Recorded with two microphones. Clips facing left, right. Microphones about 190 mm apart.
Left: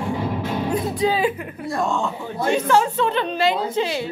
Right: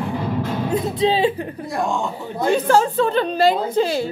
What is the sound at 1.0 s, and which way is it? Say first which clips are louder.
Speech: right 3 dB; 25° right (ahead or behind).